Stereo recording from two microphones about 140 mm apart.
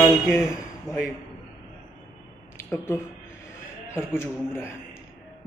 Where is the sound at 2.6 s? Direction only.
15° left (ahead or behind).